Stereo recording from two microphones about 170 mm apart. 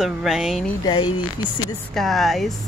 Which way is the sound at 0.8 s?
25° left (ahead or behind).